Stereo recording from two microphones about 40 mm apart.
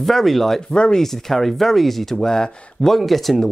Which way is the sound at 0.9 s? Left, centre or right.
Centre.